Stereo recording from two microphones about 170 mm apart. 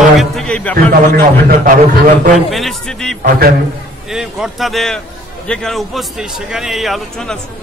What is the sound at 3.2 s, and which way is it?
Speech, 65° right (ahead or behind).